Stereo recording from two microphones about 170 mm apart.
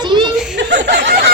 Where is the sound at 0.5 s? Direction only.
90° right.